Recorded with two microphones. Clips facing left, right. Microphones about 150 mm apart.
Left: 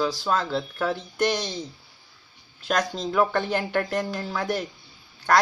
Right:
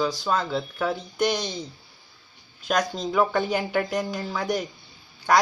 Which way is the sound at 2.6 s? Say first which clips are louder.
Right 1 dB; centre (ahead or behind).